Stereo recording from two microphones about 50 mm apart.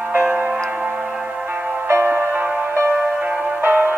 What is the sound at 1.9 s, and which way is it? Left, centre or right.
Music, right.